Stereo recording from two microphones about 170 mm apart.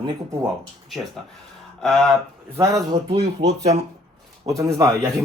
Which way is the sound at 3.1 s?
35° right (ahead or behind).